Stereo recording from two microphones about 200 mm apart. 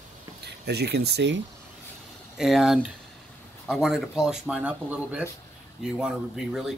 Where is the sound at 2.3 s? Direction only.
Centre (ahead or behind).